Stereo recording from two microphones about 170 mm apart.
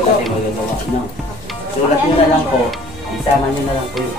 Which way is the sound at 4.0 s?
Centre (ahead or behind).